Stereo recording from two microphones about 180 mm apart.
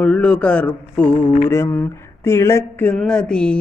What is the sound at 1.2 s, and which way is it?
Mantra, 45° left (ahead or behind).